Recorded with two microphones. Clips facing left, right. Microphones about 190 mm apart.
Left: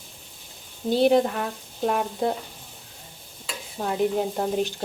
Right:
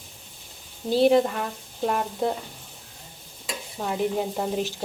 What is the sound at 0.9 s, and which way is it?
Speech, centre (ahead or behind).